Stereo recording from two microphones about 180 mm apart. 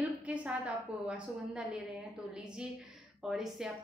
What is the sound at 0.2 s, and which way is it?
A woman's voice, 5° right (ahead or behind).